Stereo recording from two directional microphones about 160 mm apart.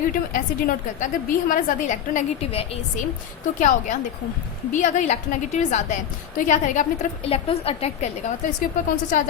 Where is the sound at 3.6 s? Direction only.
50° left (ahead or behind).